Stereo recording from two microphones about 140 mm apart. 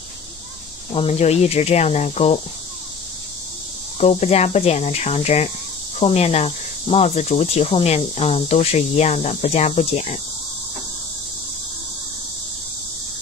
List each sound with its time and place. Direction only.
0.9 s speech: 45° left (ahead or behind)
4.0 s speech: 50° left (ahead or behind)